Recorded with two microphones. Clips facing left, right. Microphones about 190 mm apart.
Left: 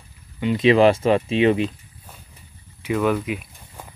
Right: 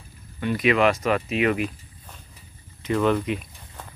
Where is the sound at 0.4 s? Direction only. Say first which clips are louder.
Left 5 dB; 20° left (ahead or behind).